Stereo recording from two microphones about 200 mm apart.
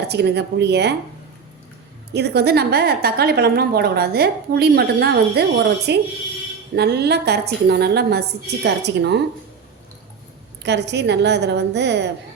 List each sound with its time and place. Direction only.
0.1 s a woman's voice: 55° right (ahead or behind)
2.1 s a woman's voice: 55° right (ahead or behind)
10.6 s a woman's voice: 60° right (ahead or behind)